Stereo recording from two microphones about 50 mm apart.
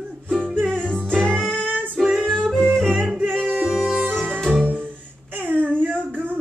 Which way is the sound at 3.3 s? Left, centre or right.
Centre.